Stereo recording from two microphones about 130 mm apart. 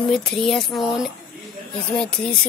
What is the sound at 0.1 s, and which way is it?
Speech, 5° left (ahead or behind).